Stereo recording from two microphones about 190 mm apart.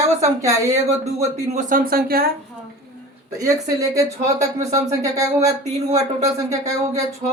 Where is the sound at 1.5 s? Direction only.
50° right (ahead or behind).